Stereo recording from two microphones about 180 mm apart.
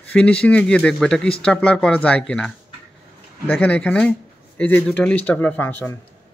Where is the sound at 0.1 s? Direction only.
5° left (ahead or behind).